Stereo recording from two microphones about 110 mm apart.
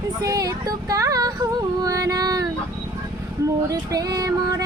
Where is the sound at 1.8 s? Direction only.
35° right (ahead or behind).